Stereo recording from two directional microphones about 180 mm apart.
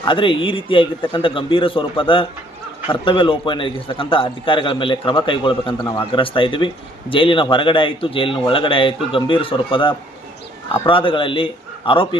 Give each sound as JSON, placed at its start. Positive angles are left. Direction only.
{"t": 0.0, "sound": "a man's voice", "side_deg": 25}